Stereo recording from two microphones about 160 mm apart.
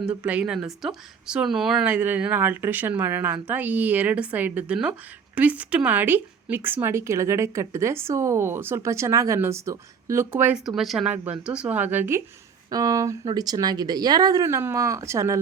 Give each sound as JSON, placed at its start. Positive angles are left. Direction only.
{"t": 0.0, "sound": "speech", "side_deg": -10}
{"t": 10.8, "sound": "speech", "side_deg": 0}